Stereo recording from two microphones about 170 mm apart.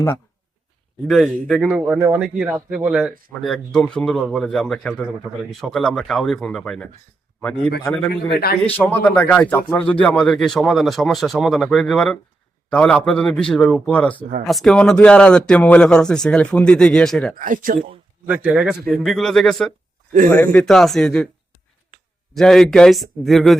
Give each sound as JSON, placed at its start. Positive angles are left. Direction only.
{"t": 1.0, "sound": "speech", "side_deg": 0}
{"t": 8.1, "sound": "a man's voice", "side_deg": 65}
{"t": 8.6, "sound": "speech", "side_deg": 10}
{"t": 17.3, "sound": "speech", "side_deg": -50}
{"t": 18.4, "sound": "speech", "side_deg": -5}
{"t": 22.4, "sound": "speech", "side_deg": 0}